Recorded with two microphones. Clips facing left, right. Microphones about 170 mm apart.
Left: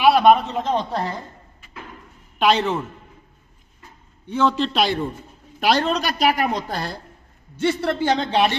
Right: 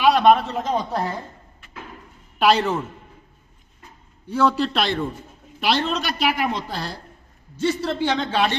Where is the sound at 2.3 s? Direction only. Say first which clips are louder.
Even; 5° right (ahead or behind).